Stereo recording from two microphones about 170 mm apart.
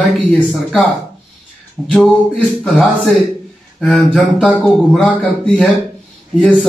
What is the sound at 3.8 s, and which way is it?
Speech, centre (ahead or behind).